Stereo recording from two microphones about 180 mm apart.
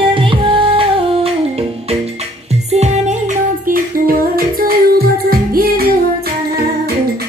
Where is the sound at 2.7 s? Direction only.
40° right (ahead or behind); by 5.8 s 55° right (ahead or behind).